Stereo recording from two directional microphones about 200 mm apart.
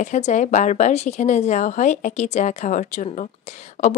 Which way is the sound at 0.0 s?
35° left (ahead or behind).